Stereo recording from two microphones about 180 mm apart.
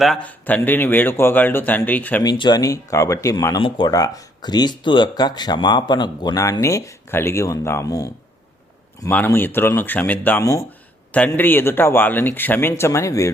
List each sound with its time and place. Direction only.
0.0 s a man's voice: 5° left (ahead or behind)
2.2 s a man's voice: 20° left (ahead or behind)